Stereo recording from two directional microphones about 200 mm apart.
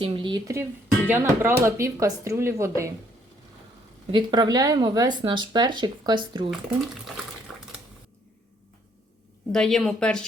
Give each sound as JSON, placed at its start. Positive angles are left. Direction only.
{"t": 0.0, "sound": "speech", "side_deg": -25}
{"t": 4.1, "sound": "speech", "side_deg": -20}
{"t": 7.5, "sound": "dishes", "side_deg": -5}
{"t": 9.5, "sound": "speech", "side_deg": 0}